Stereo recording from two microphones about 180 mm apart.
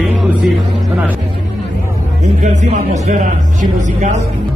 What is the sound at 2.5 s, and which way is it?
Speech, 40° right (ahead or behind).